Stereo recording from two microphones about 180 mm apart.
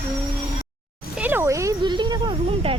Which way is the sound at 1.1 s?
10° right (ahead or behind).